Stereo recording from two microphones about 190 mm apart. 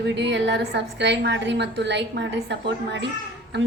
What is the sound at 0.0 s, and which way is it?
A woman's voice, 65° right (ahead or behind).